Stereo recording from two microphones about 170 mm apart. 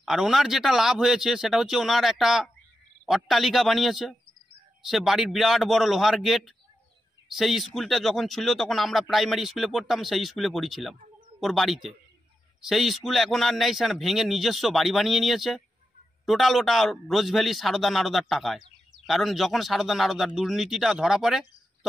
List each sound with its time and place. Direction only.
0.0 s speech: centre (ahead or behind)